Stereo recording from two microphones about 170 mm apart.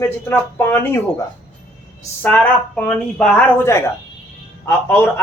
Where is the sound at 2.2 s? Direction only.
10° left (ahead or behind).